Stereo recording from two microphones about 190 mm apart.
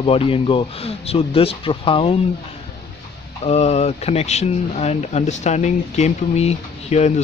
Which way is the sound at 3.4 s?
35° left (ahead or behind).